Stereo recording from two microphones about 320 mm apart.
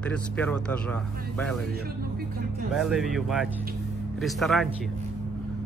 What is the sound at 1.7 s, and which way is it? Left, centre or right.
Speech, right.